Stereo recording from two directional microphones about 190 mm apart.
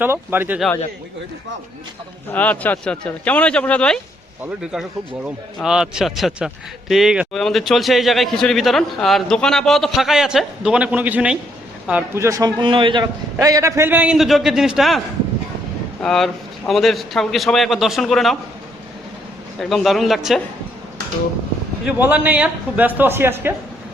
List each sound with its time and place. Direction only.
0.0 s a man's voice: 10° right (ahead or behind)
2.3 s a man's voice: 10° left (ahead or behind)
19.5 s a man's voice: centre (ahead or behind)
21.8 s a man's voice: 10° right (ahead or behind)